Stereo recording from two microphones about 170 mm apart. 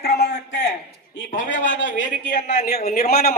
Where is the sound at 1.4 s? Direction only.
90° left.